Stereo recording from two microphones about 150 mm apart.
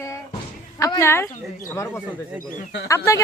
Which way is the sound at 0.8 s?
20° left (ahead or behind).